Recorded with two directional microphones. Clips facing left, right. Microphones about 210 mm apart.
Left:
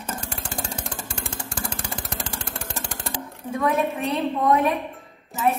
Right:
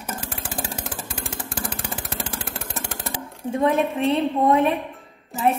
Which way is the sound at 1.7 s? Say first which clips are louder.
Right 1 dB; centre (ahead or behind).